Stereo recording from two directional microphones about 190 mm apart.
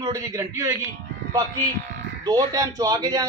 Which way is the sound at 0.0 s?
15° right (ahead or behind).